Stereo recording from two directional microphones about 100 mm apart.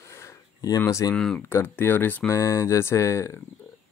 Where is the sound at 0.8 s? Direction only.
30° left (ahead or behind).